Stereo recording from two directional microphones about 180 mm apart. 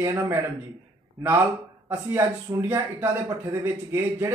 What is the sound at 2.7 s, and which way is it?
Speech, 15° right (ahead or behind).